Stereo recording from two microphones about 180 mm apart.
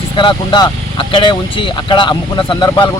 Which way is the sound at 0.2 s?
25° left (ahead or behind).